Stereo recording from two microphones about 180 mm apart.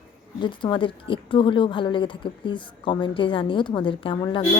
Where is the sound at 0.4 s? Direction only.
25° left (ahead or behind).